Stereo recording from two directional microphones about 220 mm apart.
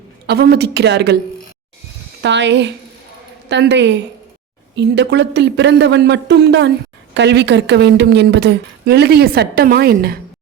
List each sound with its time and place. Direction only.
0.3 s a woman's voice: 45° right (ahead or behind)
2.2 s a woman's voice: 55° right (ahead or behind)